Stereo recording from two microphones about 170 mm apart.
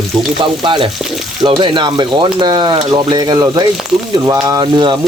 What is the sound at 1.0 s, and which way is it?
Speech, centre (ahead or behind).